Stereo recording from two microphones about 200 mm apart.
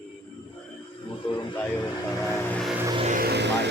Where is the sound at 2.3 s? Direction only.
5° left (ahead or behind).